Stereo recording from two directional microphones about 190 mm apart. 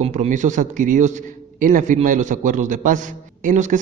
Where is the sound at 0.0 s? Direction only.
35° right (ahead or behind).